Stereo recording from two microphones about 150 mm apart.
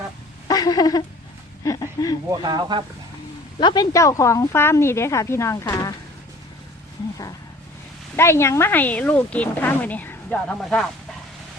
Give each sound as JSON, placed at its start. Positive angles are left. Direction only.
{"t": 0.4, "sound": "a sound", "side_deg": 25}
{"t": 2.3, "sound": "speech", "side_deg": -30}
{"t": 3.6, "sound": "a woman's voice", "side_deg": 30}
{"t": 8.1, "sound": "speech", "side_deg": 15}